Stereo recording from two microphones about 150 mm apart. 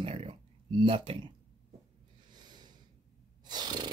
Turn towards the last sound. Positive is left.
turn(degrees=-30)  # may be behind; listen again after turning